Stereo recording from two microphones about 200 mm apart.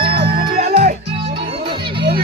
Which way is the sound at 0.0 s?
55° right (ahead or behind).